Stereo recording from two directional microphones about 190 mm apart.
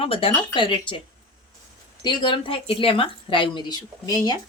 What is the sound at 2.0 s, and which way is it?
Speech, 25° left (ahead or behind).